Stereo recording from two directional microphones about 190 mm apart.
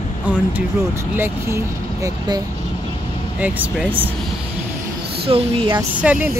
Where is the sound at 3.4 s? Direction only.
10° right (ahead or behind).